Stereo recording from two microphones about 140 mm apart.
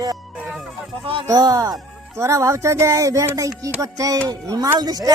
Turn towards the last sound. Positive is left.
turn(degrees=-30)  # may be behind; listen again after turning